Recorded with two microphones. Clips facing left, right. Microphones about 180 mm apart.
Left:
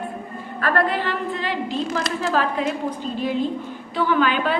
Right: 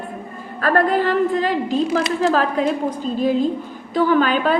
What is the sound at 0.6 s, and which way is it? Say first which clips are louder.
A woman's voice: right 5 dB; 40° right (ahead or behind).